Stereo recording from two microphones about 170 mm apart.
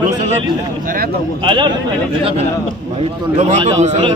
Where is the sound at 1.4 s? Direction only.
30° right (ahead or behind).